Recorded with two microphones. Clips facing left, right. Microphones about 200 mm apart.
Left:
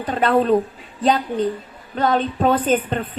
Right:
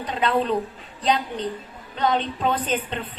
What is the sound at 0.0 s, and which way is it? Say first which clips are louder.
A woman's voice: left 5 dB; 50° left (ahead or behind).